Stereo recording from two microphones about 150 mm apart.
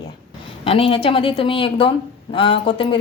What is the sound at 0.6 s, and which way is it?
A woman's voice, 40° left (ahead or behind).